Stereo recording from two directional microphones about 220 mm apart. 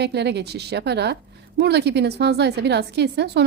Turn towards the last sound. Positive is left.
turn(degrees=-50)  # may be behind; listen again after turning